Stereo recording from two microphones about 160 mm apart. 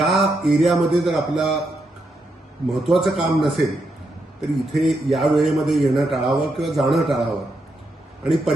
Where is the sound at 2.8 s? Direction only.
Centre (ahead or behind).